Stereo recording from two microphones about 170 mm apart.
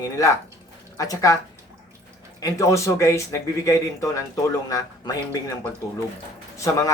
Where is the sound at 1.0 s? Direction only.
20° left (ahead or behind).